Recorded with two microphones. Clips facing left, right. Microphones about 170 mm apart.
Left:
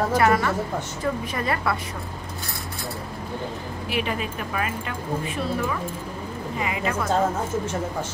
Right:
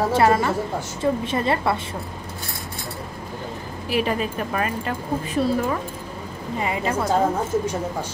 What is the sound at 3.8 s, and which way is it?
Speech, 40° right (ahead or behind).